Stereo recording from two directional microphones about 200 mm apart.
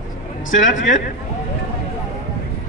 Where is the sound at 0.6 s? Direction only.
40° left (ahead or behind).